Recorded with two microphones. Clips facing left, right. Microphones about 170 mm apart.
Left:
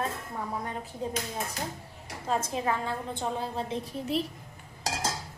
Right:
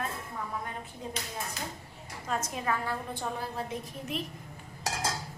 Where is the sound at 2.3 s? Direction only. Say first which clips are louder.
Left 3 dB; 30° left (ahead or behind).